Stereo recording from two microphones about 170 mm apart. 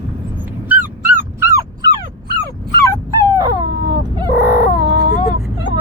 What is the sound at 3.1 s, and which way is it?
Dog, 20° right (ahead or behind).